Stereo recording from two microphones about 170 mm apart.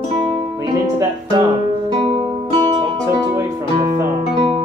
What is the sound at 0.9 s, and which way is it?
Music, 25° right (ahead or behind).